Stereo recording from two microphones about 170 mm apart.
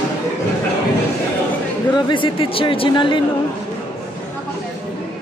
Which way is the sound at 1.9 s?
30° left (ahead or behind).